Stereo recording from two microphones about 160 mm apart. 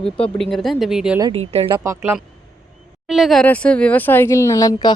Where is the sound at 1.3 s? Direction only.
40° right (ahead or behind).